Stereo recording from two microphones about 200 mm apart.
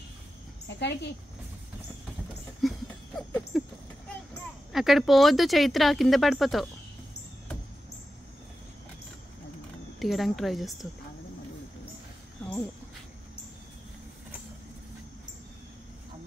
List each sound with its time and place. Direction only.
0.7 s speech: 60° left (ahead or behind)
2.6 s a sound: centre (ahead or behind)
3.2 s speech: centre (ahead or behind)
4.7 s speech: centre (ahead or behind)
9.9 s speech: centre (ahead or behind)